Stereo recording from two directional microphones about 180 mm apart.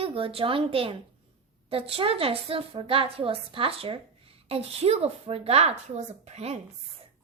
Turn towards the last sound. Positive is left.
turn(degrees=-35)  # may be behind; listen again after turning